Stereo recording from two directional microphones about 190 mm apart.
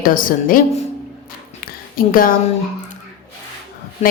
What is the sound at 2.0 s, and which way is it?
Speech, 45° left (ahead or behind).